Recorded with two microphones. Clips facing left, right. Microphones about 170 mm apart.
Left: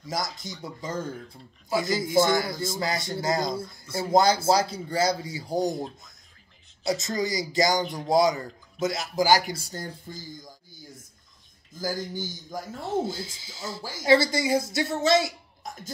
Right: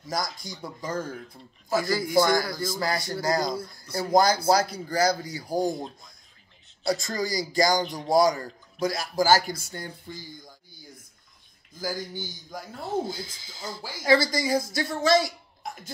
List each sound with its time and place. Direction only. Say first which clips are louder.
0.1 s speech: right 1 dB; 25° left (ahead or behind)
6.9 s speech: even; 20° left (ahead or behind)
9.6 s speech: left 1 dB; 40° left (ahead or behind)
11.7 s speech: left 2 dB; 45° left (ahead or behind)
13.0 s speech: left 2 dB; 25° left (ahead or behind)